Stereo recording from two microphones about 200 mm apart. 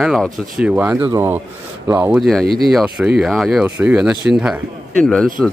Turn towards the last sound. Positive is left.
turn(degrees=5)  # may be behind; listen again after turning